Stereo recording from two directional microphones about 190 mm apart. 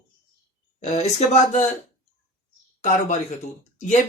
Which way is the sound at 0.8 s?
35° left (ahead or behind).